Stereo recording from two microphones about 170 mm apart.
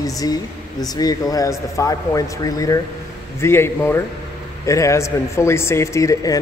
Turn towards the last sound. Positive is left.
turn(degrees=20)  # may be behind; listen again after turning